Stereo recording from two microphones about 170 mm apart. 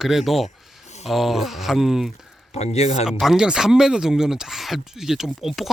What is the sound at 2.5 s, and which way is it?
Speech, 40° left (ahead or behind).